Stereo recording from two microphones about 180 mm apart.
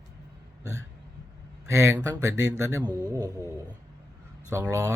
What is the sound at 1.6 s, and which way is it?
Speech, 15° right (ahead or behind).